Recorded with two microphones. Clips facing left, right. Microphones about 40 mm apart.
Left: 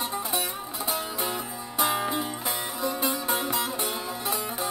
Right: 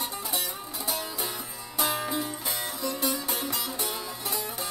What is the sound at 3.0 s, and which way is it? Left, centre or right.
Sitar, left.